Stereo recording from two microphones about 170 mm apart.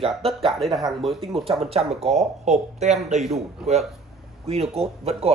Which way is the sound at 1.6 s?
35° right (ahead or behind).